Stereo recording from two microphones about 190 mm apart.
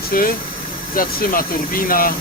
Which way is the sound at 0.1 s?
50° left (ahead or behind).